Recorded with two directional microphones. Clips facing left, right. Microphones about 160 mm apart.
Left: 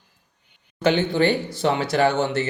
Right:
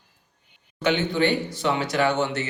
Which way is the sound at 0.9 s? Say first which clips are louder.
Left 3 dB; 35° left (ahead or behind).